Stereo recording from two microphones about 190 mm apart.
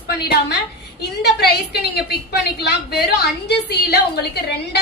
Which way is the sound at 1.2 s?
60° left (ahead or behind).